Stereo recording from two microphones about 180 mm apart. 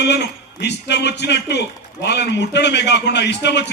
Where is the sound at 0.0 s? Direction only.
70° left (ahead or behind).